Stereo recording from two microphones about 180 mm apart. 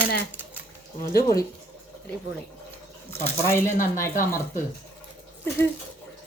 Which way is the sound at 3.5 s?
15° left (ahead or behind).